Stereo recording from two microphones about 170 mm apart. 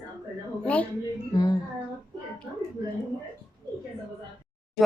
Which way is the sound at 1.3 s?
25° left (ahead or behind).